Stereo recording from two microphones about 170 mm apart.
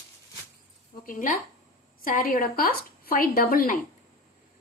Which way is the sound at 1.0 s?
55° left (ahead or behind).